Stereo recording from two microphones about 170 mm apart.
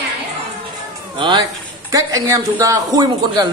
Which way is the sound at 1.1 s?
25° right (ahead or behind).